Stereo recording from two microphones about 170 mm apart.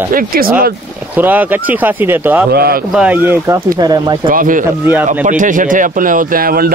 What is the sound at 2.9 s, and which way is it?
Speech, 5° right (ahead or behind).